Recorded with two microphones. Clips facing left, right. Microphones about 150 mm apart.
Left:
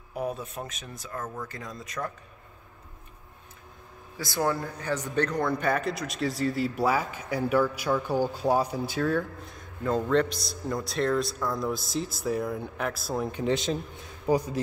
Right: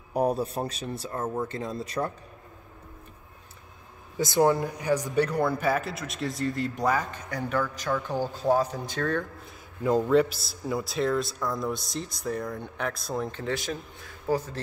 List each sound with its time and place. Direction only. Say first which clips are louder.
0.1 s speech: right 7 dB; 40° right (ahead or behind)
4.2 s a man's voice: right 6 dB; 20° right (ahead or behind); by 13.4 s 5° left (ahead or behind)
13.4 s a man's voice: left 4 dB; 20° left (ahead or behind)